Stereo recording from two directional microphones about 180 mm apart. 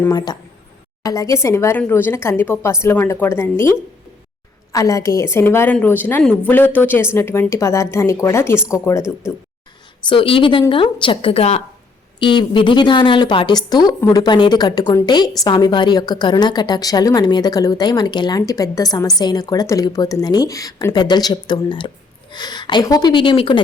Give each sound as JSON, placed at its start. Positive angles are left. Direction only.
{"t": 0.0, "sound": "a woman's voice", "side_deg": 20}
{"t": 4.7, "sound": "a woman's voice", "side_deg": 20}
{"t": 10.1, "sound": "a woman's voice", "side_deg": 30}